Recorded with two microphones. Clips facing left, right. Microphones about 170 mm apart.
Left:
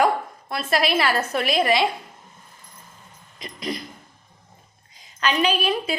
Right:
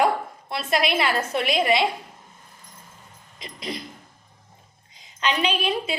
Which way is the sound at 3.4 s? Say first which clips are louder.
Left 3 dB; 25° right (ahead or behind).